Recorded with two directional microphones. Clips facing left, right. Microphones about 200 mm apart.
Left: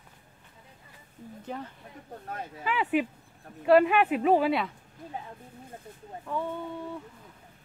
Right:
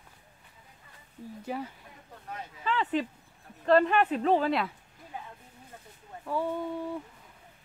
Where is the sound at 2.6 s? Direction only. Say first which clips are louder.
Left 2 dB; 10° left (ahead or behind).